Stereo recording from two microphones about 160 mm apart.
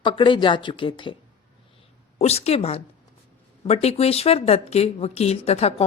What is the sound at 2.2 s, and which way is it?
A woman's voice, 40° left (ahead or behind).